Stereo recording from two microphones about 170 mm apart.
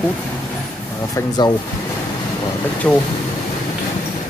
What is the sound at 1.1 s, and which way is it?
Speech, 25° left (ahead or behind).